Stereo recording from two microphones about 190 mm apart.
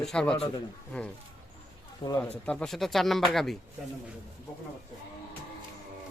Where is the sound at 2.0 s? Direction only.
25° left (ahead or behind).